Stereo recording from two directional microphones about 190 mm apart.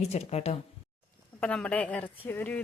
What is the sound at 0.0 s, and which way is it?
Speech, 35° left (ahead or behind).